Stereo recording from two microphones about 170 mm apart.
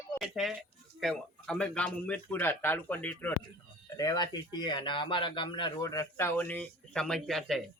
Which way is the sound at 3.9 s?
20° left (ahead or behind).